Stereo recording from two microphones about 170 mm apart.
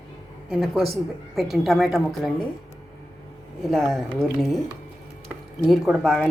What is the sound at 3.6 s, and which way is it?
Speech, centre (ahead or behind).